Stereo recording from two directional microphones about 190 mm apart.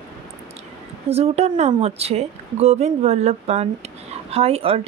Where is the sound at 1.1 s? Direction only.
35° right (ahead or behind).